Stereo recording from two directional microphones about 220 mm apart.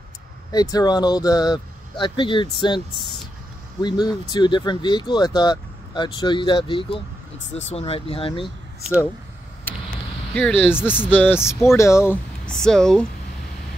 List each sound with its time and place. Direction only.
0.5 s speech: 15° left (ahead or behind)
3.8 s speech: 20° left (ahead or behind)
10.3 s speech: 5° left (ahead or behind)